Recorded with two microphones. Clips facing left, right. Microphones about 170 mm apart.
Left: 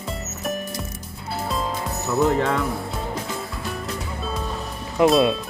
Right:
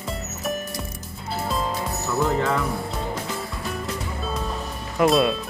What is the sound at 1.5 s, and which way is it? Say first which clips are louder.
Music: even; centre (ahead or behind).